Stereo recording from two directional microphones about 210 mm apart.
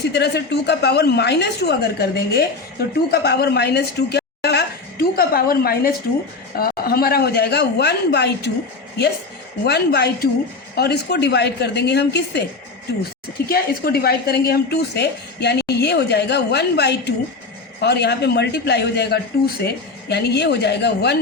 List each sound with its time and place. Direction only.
0.1 s a woman's voice: 55° left (ahead or behind)
9.6 s a woman's voice: 50° left (ahead or behind)
13.5 s a woman's voice: 45° left (ahead or behind)